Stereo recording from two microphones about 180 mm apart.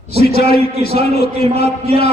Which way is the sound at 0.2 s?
60° left (ahead or behind).